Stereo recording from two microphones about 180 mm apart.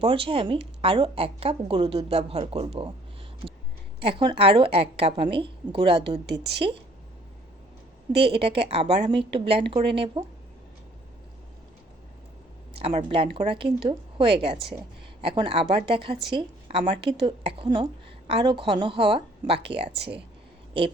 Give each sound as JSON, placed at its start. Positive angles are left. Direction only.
{"t": 0.0, "sound": "speech", "side_deg": -30}
{"t": 4.0, "sound": "a woman's voice", "side_deg": -30}
{"t": 6.2, "sound": "a woman's voice", "side_deg": -70}
{"t": 8.1, "sound": "a woman's voice", "side_deg": -30}
{"t": 12.7, "sound": "a woman's voice", "side_deg": -35}